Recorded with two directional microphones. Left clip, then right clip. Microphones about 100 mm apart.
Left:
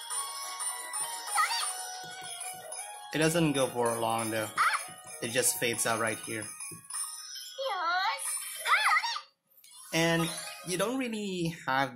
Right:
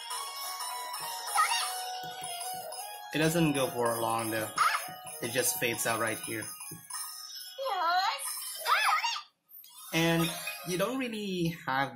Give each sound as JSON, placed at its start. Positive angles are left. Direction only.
{"t": 0.1, "sound": "music", "side_deg": 5}
{"t": 3.1, "sound": "jingle bell", "side_deg": 40}
{"t": 4.6, "sound": "music", "side_deg": 0}
{"t": 5.2, "sound": "jingle bell", "side_deg": 40}
{"t": 7.6, "sound": "music", "side_deg": 5}
{"t": 9.9, "sound": "jingle bell", "side_deg": 35}
{"t": 10.7, "sound": "speech", "side_deg": 45}
{"t": 11.0, "sound": "jingle bell", "side_deg": 35}